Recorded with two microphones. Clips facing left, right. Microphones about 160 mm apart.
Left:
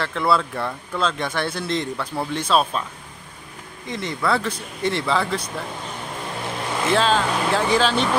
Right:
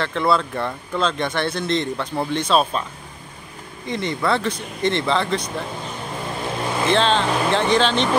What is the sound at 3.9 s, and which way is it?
Speech, centre (ahead or behind).